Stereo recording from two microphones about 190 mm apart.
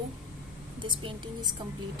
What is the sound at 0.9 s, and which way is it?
Speech, 25° right (ahead or behind).